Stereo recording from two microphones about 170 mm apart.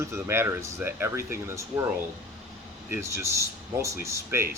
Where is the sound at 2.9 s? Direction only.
15° right (ahead or behind).